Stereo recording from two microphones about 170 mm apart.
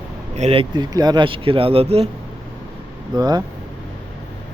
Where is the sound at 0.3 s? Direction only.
35° right (ahead or behind).